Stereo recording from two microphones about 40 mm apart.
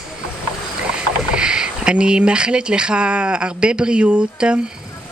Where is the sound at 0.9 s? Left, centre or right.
Right.